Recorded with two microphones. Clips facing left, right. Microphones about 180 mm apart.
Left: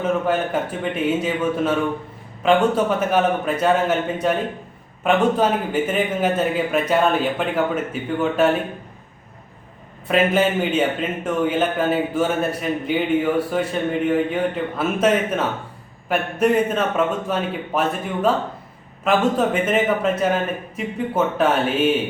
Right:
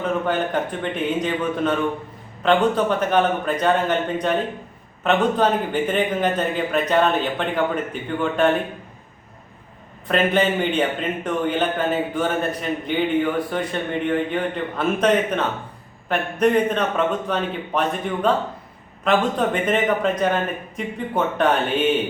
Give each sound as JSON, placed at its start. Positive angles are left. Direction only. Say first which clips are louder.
{"t": 0.0, "sound": "a man's voice", "louder": "left 2 dB", "side_deg": 5}
{"t": 10.1, "sound": "a man's voice", "louder": "left 1 dB", "side_deg": 5}